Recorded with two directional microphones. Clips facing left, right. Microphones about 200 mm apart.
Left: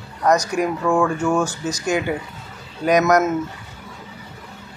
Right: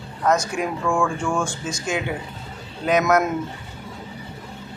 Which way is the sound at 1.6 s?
65° left (ahead or behind).